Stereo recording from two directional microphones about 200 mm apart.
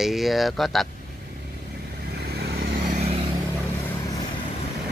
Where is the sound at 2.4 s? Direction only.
50° right (ahead or behind).